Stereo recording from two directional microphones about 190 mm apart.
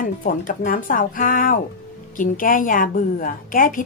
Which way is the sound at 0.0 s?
45° left (ahead or behind).